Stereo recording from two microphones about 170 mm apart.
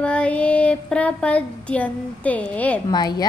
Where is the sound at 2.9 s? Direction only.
25° left (ahead or behind).